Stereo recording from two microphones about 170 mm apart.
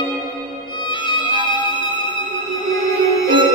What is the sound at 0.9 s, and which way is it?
Music, 25° left (ahead or behind).